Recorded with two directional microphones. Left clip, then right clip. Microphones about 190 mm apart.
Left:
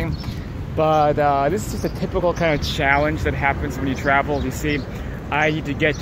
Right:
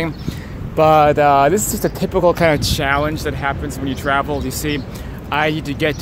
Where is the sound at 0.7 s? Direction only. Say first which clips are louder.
Right 6 dB; 40° right (ahead or behind); by 5.9 s 25° right (ahead or behind).